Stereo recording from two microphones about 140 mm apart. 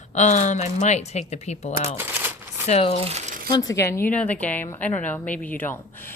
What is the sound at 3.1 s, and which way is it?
Crumpling, 55° right (ahead or behind).